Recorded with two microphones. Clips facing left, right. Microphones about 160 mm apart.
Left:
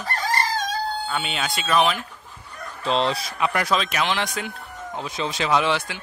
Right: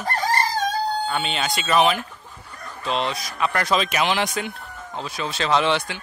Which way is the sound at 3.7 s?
5° right (ahead or behind).